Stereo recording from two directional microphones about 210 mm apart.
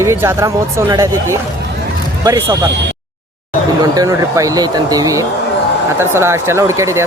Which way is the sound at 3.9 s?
15° right (ahead or behind).